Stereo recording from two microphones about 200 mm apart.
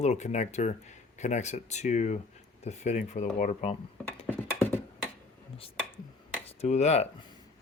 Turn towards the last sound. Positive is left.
turn(degrees=30)  # may be behind; listen again after turning